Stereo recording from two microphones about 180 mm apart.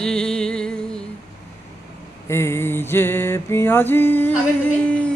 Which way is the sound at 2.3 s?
15° left (ahead or behind).